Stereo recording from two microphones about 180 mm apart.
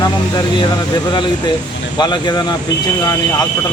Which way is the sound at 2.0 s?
25° left (ahead or behind).